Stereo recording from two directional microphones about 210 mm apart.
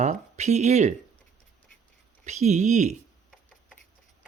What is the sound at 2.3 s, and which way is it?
Speech, 30° right (ahead or behind).